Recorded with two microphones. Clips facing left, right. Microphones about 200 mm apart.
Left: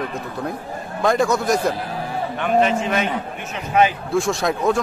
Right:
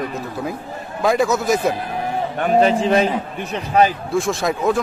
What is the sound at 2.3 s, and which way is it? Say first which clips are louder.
A man's voice: right 3 dB; 40° right (ahead or behind).